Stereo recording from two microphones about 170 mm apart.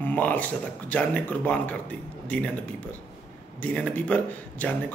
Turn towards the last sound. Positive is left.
turn(degrees=10)  # may be behind; listen again after turning